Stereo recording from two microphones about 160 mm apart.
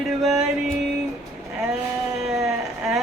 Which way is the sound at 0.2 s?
Centre (ahead or behind).